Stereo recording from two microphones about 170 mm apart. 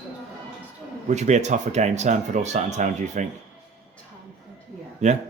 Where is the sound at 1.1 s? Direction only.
40° right (ahead or behind).